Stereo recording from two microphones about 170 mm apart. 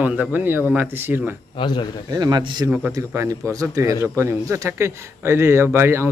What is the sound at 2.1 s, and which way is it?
A man's voice, 25° right (ahead or behind).